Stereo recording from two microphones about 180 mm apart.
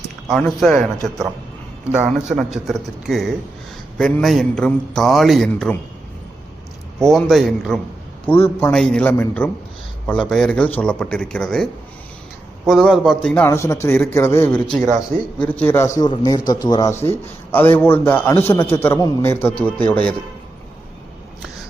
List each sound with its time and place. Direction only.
0.3 s a man's voice: centre (ahead or behind)
1.9 s a man's voice: 5° right (ahead or behind)
7.0 s a man's voice: centre (ahead or behind)
8.3 s a man's voice: 10° left (ahead or behind)
16.0 s a man's voice: 20° left (ahead or behind)